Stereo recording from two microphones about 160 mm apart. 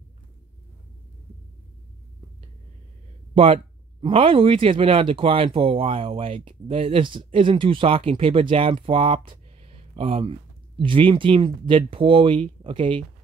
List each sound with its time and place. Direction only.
3.3 s speech: 35° right (ahead or behind)